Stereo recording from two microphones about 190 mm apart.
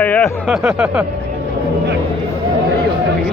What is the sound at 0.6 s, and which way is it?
Speech, 5° right (ahead or behind).